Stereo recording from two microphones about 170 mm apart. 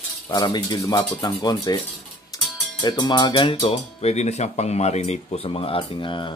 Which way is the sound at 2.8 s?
25° left (ahead or behind).